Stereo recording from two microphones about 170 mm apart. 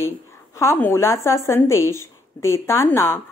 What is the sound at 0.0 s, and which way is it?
A woman's voice, 15° left (ahead or behind).